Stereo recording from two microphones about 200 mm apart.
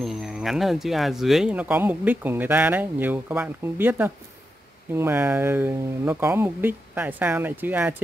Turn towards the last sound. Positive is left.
turn(degrees=-10)  # may be behind; listen again after turning